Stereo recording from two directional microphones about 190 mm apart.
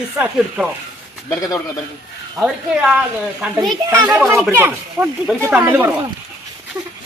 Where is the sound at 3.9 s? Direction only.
20° right (ahead or behind).